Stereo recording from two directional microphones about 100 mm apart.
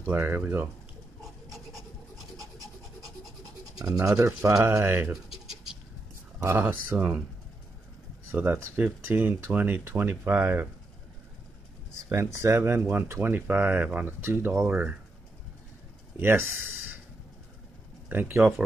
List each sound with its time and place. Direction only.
0.0 s speech: 20° right (ahead or behind)
3.8 s rub: 35° right (ahead or behind)
4.5 s speech: 30° right (ahead or behind)
5.1 s pigeon: 5° right (ahead or behind)
6.4 s speech: 20° right (ahead or behind)
8.3 s speech: 20° right (ahead or behind)
12.1 s speech: 30° right (ahead or behind)
16.2 s a sound: 20° right (ahead or behind)
18.0 s speech: 20° right (ahead or behind)